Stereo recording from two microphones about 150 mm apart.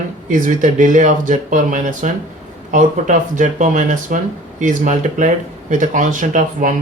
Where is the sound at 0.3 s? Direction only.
60° right (ahead or behind).